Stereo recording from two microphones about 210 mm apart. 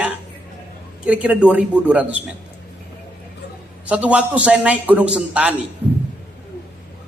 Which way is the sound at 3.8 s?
5° right (ahead or behind).